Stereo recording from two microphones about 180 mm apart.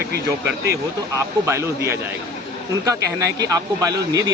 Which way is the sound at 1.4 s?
15° right (ahead or behind).